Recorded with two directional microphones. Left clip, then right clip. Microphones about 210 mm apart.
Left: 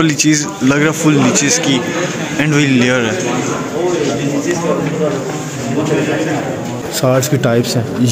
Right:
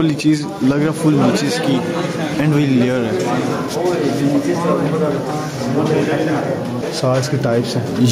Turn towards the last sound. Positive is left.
turn(degrees=45)  # may be behind; listen again after turning